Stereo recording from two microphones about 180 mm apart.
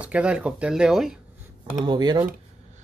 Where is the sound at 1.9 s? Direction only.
25° right (ahead or behind).